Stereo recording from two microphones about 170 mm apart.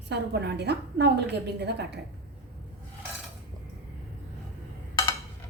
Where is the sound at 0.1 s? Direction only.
80° right.